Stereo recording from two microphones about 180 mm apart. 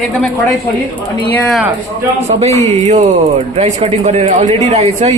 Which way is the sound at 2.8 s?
35° right (ahead or behind).